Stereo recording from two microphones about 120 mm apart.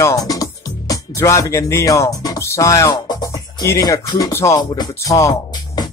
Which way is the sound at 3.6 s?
25° left (ahead or behind).